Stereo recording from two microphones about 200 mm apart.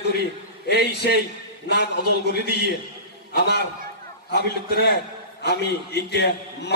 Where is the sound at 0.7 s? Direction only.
55° left (ahead or behind).